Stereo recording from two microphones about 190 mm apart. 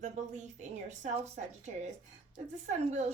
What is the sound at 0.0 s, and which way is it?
Speech, 40° right (ahead or behind).